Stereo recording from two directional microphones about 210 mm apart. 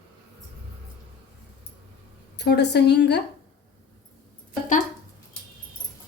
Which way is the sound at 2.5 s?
55° left (ahead or behind).